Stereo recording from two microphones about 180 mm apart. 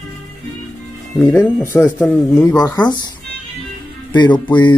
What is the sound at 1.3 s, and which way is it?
Speech, 15° left (ahead or behind).